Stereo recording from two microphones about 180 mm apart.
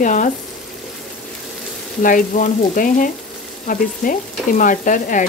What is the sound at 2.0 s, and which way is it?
Stir, 50° left (ahead or behind).